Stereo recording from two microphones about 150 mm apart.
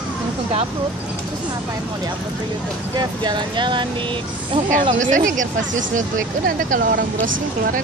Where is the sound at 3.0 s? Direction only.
30° right (ahead or behind).